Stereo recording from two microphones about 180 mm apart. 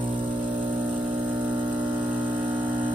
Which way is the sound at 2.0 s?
10° right (ahead or behind).